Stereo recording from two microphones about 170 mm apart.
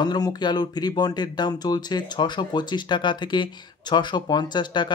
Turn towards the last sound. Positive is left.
turn(degrees=25)  # may be behind; listen again after turning